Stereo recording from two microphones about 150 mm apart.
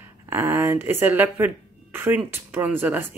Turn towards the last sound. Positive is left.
turn(degrees=-15)  # may be behind; listen again after turning